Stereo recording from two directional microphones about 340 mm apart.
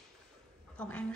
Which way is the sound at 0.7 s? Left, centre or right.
Centre.